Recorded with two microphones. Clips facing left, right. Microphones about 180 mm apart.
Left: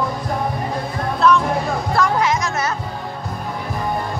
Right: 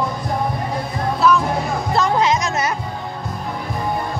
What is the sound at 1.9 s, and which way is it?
Music, 20° right (ahead or behind).